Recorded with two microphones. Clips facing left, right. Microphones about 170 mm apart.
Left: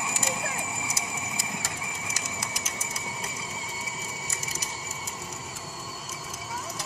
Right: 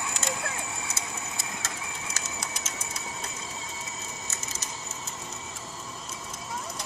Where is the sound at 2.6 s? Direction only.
10° left (ahead or behind).